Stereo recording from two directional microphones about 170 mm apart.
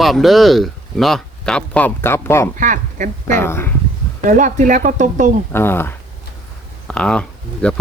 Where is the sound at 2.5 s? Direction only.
50° right (ahead or behind).